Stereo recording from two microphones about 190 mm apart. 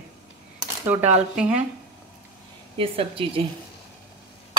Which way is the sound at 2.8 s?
30° right (ahead or behind).